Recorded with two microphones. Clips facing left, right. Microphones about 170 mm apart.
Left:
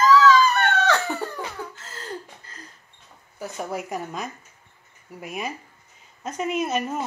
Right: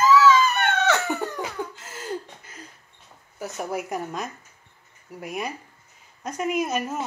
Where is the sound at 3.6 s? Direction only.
5° right (ahead or behind).